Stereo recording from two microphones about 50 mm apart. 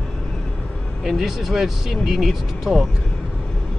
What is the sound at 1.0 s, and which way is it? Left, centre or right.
Speech, centre.